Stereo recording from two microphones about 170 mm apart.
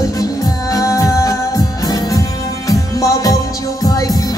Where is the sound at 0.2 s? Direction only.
20° left (ahead or behind).